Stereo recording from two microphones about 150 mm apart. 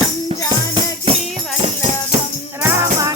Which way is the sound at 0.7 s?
40° right (ahead or behind).